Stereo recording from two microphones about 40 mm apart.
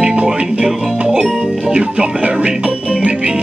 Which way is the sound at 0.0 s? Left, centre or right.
Right.